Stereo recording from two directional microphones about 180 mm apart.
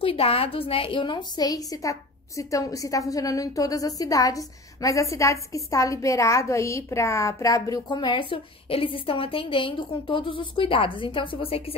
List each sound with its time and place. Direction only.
0.0 s a woman's voice: 30° left (ahead or behind)